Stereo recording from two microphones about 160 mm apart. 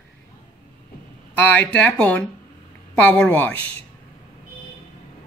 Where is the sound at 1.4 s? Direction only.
10° left (ahead or behind).